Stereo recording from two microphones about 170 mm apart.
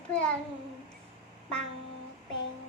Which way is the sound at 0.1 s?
5° left (ahead or behind).